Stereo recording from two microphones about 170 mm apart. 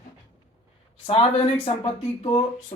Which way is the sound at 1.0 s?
35° left (ahead or behind).